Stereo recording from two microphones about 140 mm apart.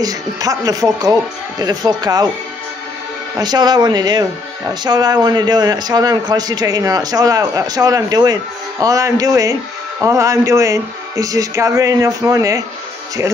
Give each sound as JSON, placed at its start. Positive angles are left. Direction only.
{"t": 0.0, "sound": "a man's voice", "side_deg": -25}
{"t": 3.3, "sound": "a man's voice", "side_deg": -30}